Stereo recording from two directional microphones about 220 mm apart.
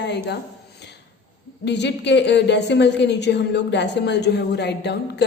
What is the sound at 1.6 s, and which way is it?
A woman's voice, 50° left (ahead or behind).